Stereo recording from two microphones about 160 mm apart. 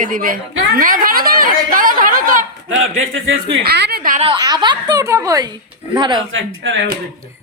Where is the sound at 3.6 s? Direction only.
85° right.